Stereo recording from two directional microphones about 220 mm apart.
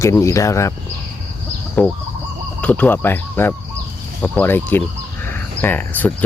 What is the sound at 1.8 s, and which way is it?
Cricket, 5° left (ahead or behind).